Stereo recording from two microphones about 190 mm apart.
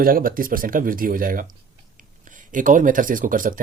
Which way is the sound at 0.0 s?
50° right (ahead or behind).